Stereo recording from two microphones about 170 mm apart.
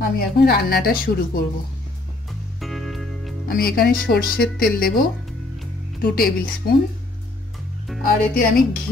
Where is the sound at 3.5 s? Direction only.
60° left (ahead or behind).